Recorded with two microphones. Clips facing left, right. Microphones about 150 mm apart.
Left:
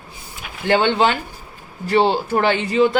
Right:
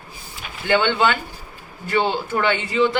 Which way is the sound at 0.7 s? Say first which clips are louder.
Left 2 dB; 35° left (ahead or behind).